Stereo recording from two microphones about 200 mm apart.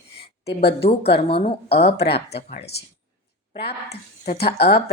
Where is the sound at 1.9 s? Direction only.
55° left (ahead or behind).